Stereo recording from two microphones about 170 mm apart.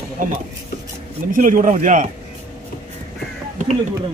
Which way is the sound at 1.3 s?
50° right (ahead or behind).